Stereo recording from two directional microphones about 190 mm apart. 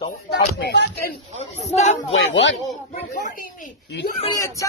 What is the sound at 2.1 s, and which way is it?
Speech, 75° left (ahead or behind).